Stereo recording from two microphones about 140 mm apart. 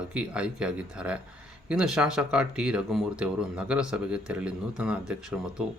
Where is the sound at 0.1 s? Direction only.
5° right (ahead or behind).